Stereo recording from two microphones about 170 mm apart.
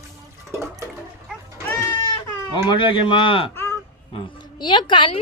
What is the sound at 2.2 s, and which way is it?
Speech, 25° left (ahead or behind).